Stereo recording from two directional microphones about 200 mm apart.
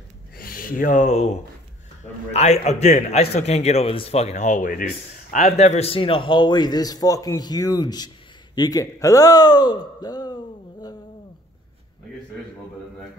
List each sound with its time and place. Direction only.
0.4 s speech: 45° left (ahead or behind)
2.3 s a man's voice: 35° left (ahead or behind)